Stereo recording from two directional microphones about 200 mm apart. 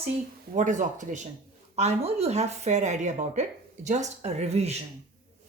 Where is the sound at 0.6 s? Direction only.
40° right (ahead or behind).